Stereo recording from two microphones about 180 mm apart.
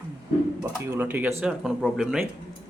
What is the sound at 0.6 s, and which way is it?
Speech, 5° right (ahead or behind).